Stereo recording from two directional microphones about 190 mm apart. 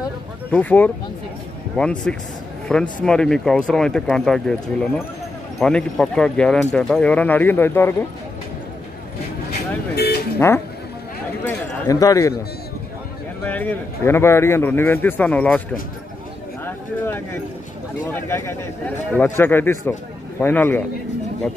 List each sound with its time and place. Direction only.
0.5 s a man's voice: 5° left (ahead or behind)
9.9 s music: 55° left (ahead or behind)
11.4 s speech: 15° left (ahead or behind)
13.5 s a man's voice: 10° left (ahead or behind)
16.6 s a sound: 10° left (ahead or behind)
18.0 s a man's voice: 15° left (ahead or behind)